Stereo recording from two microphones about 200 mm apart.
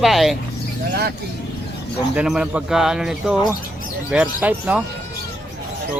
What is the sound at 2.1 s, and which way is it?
Speech, 5° right (ahead or behind).